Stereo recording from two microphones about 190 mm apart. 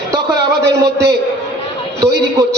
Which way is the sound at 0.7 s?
60° right (ahead or behind).